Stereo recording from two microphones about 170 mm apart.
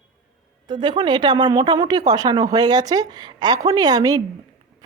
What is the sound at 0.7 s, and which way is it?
A woman's voice, 25° right (ahead or behind).